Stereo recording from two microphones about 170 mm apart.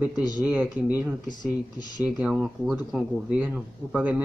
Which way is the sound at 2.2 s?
5° right (ahead or behind).